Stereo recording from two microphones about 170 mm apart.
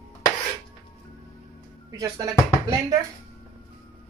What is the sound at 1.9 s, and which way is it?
Speech, 20° right (ahead or behind).